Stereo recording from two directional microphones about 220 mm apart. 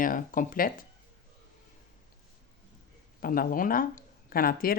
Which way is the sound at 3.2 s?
40° left (ahead or behind).